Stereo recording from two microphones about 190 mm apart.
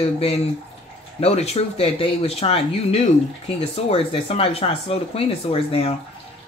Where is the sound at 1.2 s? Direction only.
35° left (ahead or behind).